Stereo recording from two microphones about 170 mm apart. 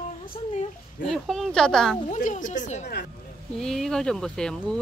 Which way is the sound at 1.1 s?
Centre (ahead or behind).